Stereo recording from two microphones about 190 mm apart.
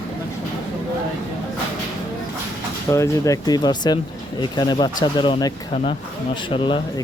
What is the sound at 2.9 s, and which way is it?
Speech, 15° left (ahead or behind).